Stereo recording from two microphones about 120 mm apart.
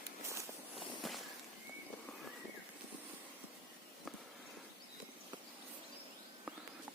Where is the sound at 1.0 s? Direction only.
Centre (ahead or behind).